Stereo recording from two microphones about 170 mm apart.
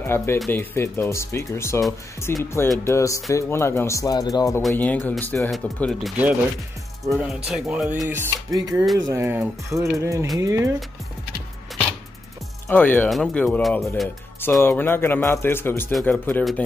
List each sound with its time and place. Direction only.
0.0 s speech: 15° left (ahead or behind)
4.6 s speech: 5° left (ahead or behind)
7.4 s speech: 5° right (ahead or behind)
12.6 s speech: 10° left (ahead or behind)
14.4 s speech: 15° left (ahead or behind)